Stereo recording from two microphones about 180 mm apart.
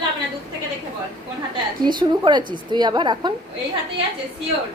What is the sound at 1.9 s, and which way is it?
A woman's voice, 25° right (ahead or behind).